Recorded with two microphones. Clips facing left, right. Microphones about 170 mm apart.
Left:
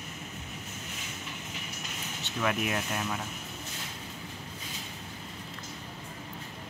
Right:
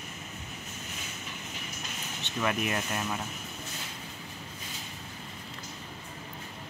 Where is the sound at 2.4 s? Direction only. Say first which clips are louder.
Even; centre (ahead or behind).